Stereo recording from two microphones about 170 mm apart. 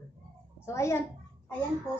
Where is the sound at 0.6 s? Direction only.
15° left (ahead or behind).